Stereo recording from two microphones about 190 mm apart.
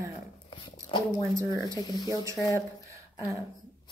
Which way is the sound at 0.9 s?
15° right (ahead or behind).